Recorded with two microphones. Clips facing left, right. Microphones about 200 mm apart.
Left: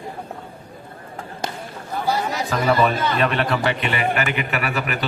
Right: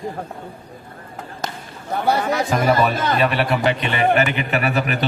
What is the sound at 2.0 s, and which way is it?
Chatter, 60° right (ahead or behind).